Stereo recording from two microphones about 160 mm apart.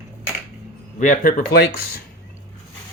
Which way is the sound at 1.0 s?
50° left (ahead or behind).